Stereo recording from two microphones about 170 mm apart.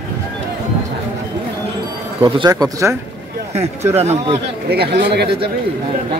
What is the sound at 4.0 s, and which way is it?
Speech, 35° right (ahead or behind).